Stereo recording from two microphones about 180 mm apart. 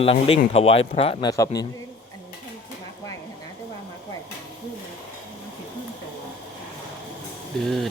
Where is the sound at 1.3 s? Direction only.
20° left (ahead or behind).